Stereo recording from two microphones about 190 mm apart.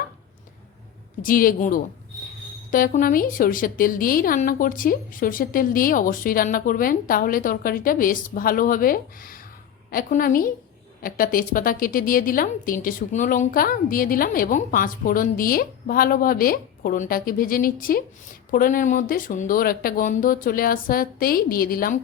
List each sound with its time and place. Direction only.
1.2 s a woman's voice: 50° left (ahead or behind)